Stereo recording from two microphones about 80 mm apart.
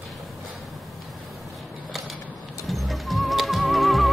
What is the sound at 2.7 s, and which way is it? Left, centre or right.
Music, centre.